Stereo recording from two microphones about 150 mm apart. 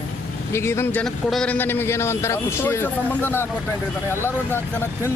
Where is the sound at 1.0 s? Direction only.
5° left (ahead or behind).